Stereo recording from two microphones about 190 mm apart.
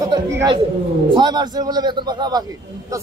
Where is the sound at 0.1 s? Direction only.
20° right (ahead or behind).